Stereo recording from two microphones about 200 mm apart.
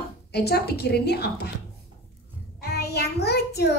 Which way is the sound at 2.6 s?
50° left (ahead or behind).